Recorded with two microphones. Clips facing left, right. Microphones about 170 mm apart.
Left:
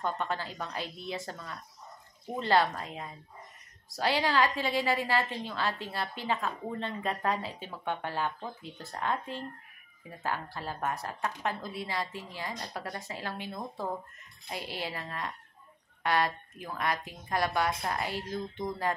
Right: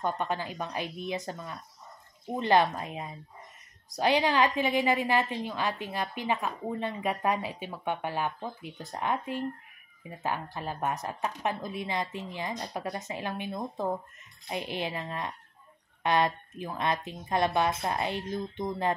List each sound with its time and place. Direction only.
0.0 s a woman's voice: 15° right (ahead or behind)